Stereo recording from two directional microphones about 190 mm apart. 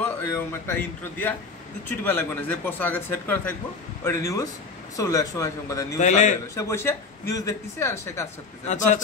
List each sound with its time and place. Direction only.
0.2 s speech: 10° left (ahead or behind)
5.9 s a man's voice: 40° left (ahead or behind)
6.5 s speech: 15° left (ahead or behind)
8.6 s a man's voice: 40° left (ahead or behind)